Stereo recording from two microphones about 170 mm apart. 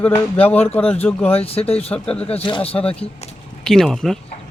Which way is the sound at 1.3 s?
35° left (ahead or behind).